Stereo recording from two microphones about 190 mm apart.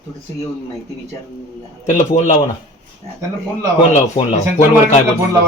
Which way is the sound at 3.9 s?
35° left (ahead or behind).